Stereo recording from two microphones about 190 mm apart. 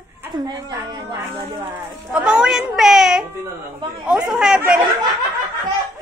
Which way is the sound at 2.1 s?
5° right (ahead or behind).